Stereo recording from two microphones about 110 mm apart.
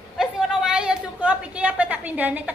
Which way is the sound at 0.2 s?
5° right (ahead or behind).